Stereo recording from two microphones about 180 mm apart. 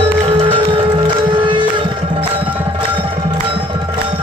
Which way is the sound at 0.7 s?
30° right (ahead or behind).